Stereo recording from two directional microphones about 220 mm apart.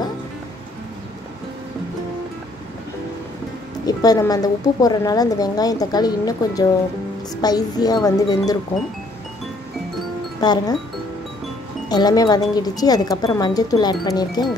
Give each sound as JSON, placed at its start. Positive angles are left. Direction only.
{"t": 3.8, "sound": "a woman's voice", "side_deg": 15}
{"t": 10.4, "sound": "wind chime", "side_deg": 20}
{"t": 11.9, "sound": "a woman's voice", "side_deg": 15}
{"t": 14.0, "sound": "wind chime", "side_deg": 20}